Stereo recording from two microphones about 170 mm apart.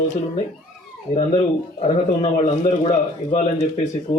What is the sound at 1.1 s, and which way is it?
A man's voice, 40° left (ahead or behind).